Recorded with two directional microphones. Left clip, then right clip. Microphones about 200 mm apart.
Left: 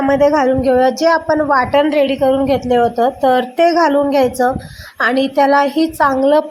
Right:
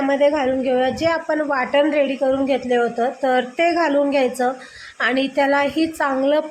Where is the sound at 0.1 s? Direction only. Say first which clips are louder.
Left 6 dB; 20° left (ahead or behind).